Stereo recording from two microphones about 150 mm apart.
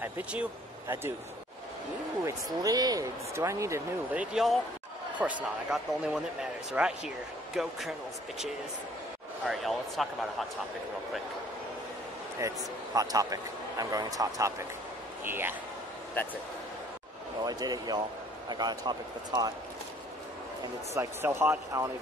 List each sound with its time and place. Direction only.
0.0 s speech: 10° right (ahead or behind)
2.2 s a man's voice: 25° right (ahead or behind); by 7.7 s centre (ahead or behind)
9.5 s speech: centre (ahead or behind)
12.4 s a man's voice: 20° right (ahead or behind)
17.4 s speech: 25° right (ahead or behind)
20.9 s a man's voice: 15° right (ahead or behind)